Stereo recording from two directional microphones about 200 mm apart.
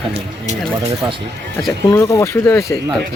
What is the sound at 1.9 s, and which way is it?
Speech, 15° left (ahead or behind).